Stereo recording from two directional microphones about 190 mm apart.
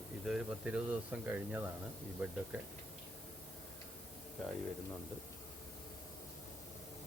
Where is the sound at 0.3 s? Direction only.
5° right (ahead or behind).